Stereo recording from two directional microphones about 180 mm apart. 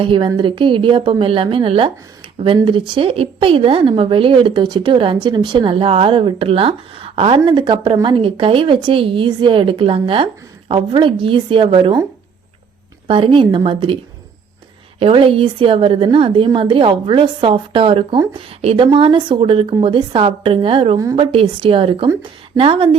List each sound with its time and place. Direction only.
0.0 s speech: 30° right (ahead or behind)
13.1 s speech: 30° right (ahead or behind)